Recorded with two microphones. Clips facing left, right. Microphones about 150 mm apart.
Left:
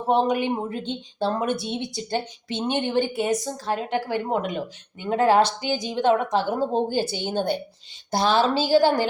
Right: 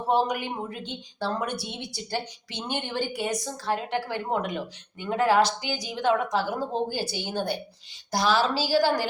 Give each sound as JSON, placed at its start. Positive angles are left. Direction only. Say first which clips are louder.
{"t": 0.1, "sound": "speech", "louder": "left 4 dB", "side_deg": 25}